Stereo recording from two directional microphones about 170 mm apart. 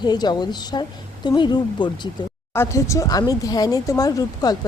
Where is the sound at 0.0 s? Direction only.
25° left (ahead or behind).